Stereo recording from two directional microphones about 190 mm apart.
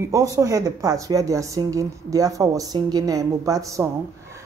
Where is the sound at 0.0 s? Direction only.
15° right (ahead or behind).